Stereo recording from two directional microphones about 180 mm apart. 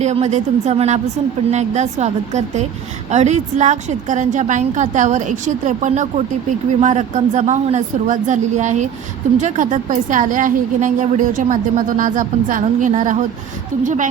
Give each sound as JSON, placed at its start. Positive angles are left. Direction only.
{"t": 0.0, "sound": "a woman's voice", "side_deg": -40}